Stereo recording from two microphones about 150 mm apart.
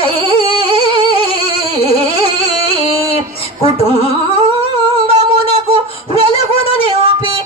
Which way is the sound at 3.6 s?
40° left (ahead or behind).